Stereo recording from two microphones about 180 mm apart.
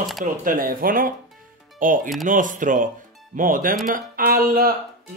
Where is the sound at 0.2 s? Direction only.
50° right (ahead or behind).